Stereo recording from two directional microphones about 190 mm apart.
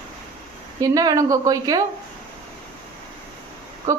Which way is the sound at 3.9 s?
15° right (ahead or behind).